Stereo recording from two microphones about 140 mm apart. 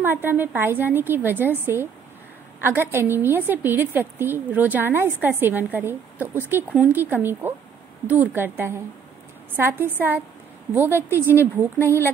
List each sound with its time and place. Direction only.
0.0 s a woman's voice: 15° right (ahead or behind)
10.9 s a woman's voice: 15° left (ahead or behind)